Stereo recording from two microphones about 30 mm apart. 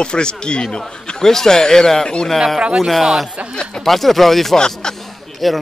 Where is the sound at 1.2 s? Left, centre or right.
Centre.